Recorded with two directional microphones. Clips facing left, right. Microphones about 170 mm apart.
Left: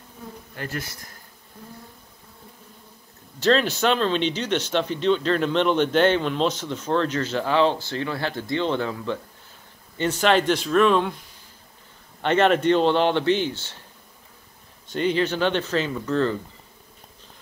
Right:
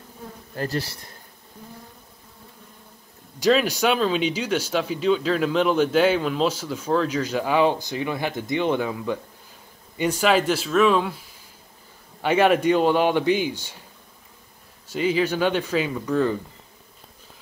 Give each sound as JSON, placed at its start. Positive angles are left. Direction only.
{"t": 0.6, "sound": "speech", "side_deg": -35}
{"t": 3.3, "sound": "speech", "side_deg": -10}
{"t": 14.9, "sound": "speech", "side_deg": -5}